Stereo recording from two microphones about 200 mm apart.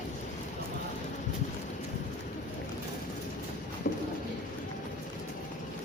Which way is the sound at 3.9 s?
45° left (ahead or behind).